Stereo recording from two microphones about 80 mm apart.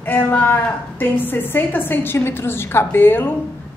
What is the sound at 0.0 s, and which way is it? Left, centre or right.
A woman's voice, left.